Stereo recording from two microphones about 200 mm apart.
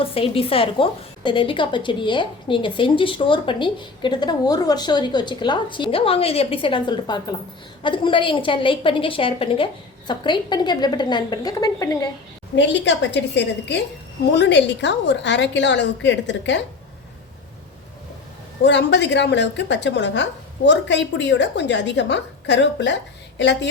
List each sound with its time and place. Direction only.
0.0 s a woman's voice: 30° left (ahead or behind)
12.5 s a woman's voice: 65° left (ahead or behind)
18.6 s a woman's voice: 60° left (ahead or behind)